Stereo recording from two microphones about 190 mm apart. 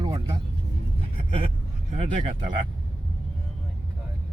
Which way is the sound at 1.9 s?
30° right (ahead or behind).